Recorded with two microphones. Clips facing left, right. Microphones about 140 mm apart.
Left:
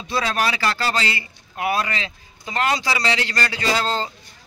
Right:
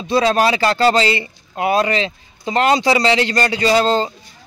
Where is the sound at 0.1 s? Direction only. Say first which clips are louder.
Right 8 dB; 20° right (ahead or behind).